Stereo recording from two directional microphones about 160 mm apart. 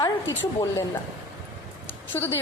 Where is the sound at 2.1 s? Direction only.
15° left (ahead or behind).